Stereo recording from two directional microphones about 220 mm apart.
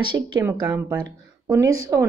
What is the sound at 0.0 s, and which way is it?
Speech, 20° right (ahead or behind).